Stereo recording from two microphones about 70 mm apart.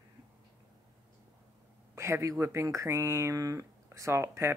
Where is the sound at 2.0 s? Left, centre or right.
Right.